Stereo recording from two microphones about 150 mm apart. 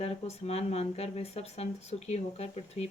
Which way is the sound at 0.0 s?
45° left (ahead or behind).